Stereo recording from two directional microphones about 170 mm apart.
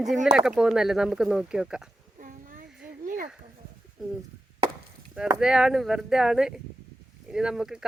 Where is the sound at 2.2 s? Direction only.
50° right (ahead or behind).